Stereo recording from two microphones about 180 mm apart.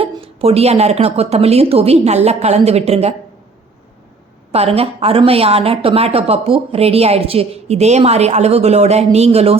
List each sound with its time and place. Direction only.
0.0 s speech: 35° right (ahead or behind)
4.5 s speech: 35° right (ahead or behind)